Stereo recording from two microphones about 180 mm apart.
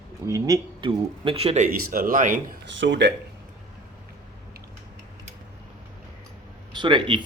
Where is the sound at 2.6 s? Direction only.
85° right.